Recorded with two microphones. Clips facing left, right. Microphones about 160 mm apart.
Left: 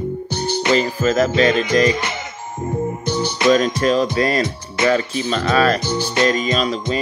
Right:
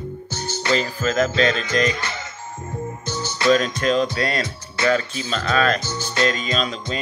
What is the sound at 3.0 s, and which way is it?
Speech, 15° left (ahead or behind).